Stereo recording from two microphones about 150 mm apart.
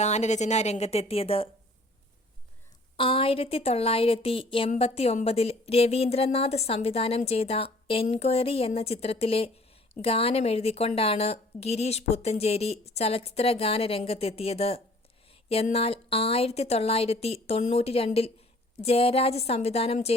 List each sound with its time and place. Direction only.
0.0 s a woman's voice: 50° left (ahead or behind)
3.0 s a woman's voice: 35° left (ahead or behind)